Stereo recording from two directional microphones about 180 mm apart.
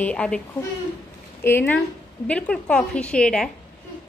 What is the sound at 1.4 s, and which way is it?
A woman's voice, 10° left (ahead or behind).